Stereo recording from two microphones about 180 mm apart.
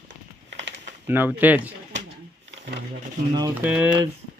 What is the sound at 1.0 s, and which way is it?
Speech, 10° right (ahead or behind).